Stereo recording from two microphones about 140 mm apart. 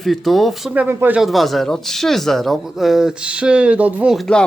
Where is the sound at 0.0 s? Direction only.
Centre (ahead or behind); by 1.2 s 15° right (ahead or behind).